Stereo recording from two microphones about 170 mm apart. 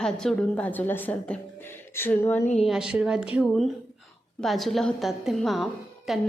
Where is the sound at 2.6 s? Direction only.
5° right (ahead or behind).